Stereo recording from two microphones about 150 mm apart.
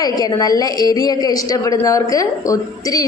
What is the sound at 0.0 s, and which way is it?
A woman's voice, 25° left (ahead or behind).